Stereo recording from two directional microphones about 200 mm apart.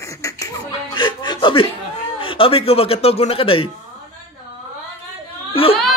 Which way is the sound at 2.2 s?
25° left (ahead or behind).